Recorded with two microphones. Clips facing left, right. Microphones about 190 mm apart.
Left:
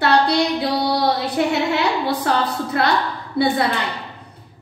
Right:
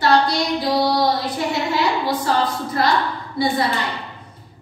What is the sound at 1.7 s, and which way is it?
A woman's voice, 65° left (ahead or behind).